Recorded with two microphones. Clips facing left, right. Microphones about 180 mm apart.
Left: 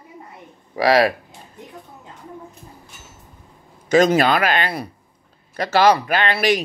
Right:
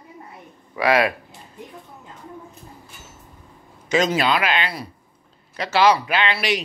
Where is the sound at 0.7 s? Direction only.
35° left (ahead or behind).